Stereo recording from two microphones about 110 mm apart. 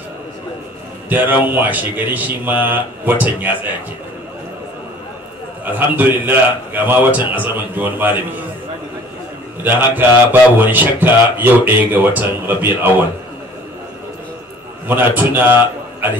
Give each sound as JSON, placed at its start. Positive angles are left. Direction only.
{"t": 1.0, "sound": "a man's voice", "side_deg": -15}
{"t": 5.7, "sound": "a man's voice", "side_deg": -15}
{"t": 9.6, "sound": "a man's voice", "side_deg": -15}
{"t": 14.9, "sound": "a man's voice", "side_deg": -15}